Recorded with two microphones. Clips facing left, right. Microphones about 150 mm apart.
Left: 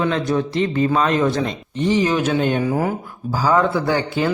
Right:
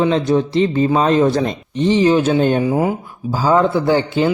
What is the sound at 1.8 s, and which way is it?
Speech, 25° right (ahead or behind).